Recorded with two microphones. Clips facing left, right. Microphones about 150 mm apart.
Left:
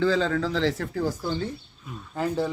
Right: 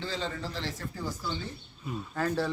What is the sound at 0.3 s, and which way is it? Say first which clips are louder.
Speech: left 11 dB; 90° left.